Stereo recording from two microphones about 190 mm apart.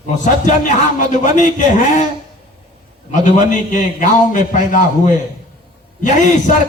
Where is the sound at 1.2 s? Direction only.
40° left (ahead or behind).